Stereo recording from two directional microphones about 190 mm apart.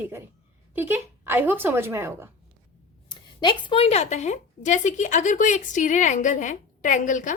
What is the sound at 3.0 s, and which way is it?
A woman's voice, 25° left (ahead or behind).